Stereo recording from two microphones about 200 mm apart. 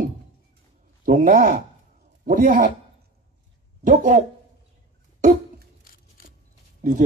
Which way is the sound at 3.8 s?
40° right (ahead or behind).